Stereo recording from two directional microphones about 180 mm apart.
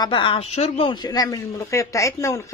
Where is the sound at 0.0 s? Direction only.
25° left (ahead or behind).